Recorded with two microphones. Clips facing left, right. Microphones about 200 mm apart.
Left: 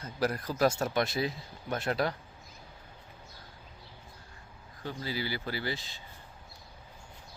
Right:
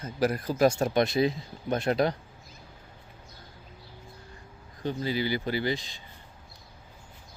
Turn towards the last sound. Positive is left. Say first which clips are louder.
# right 7 dB
turn(degrees=-15)  # may be behind; listen again after turning